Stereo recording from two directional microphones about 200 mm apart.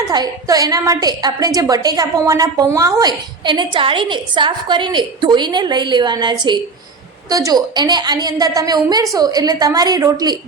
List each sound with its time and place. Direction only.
0.1 s a woman's voice: 20° right (ahead or behind)